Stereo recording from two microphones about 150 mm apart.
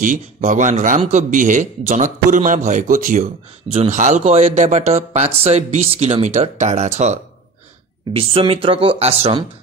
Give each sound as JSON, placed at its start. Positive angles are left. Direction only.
{"t": 0.0, "sound": "a man's voice", "side_deg": -60}
{"t": 3.7, "sound": "speech", "side_deg": -50}